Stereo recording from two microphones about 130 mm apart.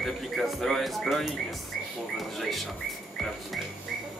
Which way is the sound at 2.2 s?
Centre (ahead or behind).